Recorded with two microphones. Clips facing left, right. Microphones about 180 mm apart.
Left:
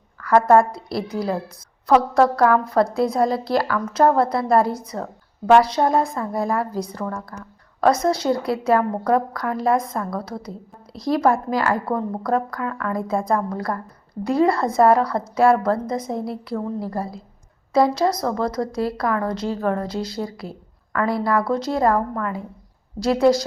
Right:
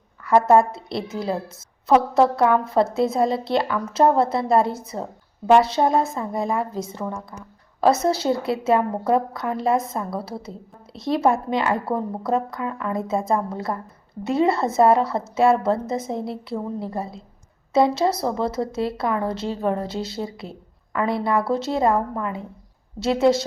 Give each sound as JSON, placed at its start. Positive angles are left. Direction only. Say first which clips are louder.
{"t": 0.2, "sound": "a woman's voice", "louder": "left 1 dB", "side_deg": -20}
{"t": 2.1, "sound": "a woman's voice", "louder": "left 1 dB", "side_deg": -25}